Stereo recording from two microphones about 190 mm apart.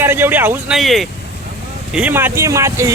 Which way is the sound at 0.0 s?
10° right (ahead or behind).